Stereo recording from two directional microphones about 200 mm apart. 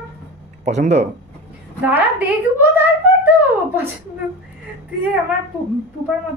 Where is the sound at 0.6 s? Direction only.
35° right (ahead or behind).